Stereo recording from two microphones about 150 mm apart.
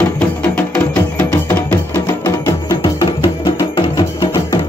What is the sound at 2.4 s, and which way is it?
Music, 30° left (ahead or behind).